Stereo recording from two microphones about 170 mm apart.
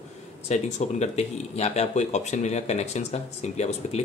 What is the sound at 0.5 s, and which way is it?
Speech, 40° left (ahead or behind).